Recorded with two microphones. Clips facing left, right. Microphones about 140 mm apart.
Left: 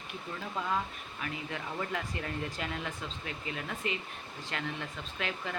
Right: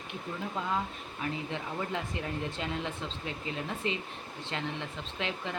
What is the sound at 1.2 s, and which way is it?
Speech, 25° right (ahead or behind).